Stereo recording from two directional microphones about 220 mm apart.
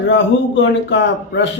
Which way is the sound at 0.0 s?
55° left (ahead or behind).